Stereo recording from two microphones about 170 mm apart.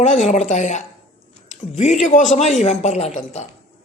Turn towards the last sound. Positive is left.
turn(degrees=40)  # may be behind; listen again after turning